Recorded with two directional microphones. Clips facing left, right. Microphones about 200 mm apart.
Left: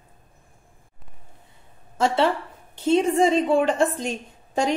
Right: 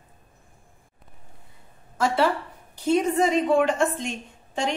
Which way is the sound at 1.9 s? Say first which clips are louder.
Left 1 dB; 25° left (ahead or behind).